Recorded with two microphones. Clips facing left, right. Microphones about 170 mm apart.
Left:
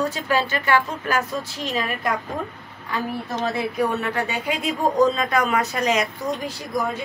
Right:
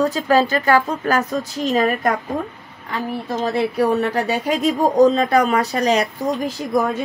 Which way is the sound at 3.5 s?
35° right (ahead or behind).